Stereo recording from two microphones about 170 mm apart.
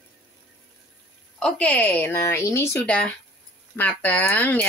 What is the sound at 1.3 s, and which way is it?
Speech, 5° left (ahead or behind).